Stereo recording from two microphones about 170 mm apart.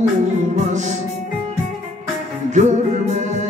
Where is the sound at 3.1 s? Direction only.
45° right (ahead or behind).